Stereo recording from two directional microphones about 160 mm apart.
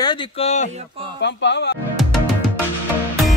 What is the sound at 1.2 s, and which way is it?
Speech, 90° left.